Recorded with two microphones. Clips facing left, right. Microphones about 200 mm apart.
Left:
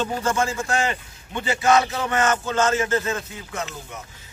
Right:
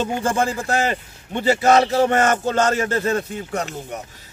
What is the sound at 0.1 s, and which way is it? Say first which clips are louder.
A man's voice: right 3 dB; 30° right (ahead or behind).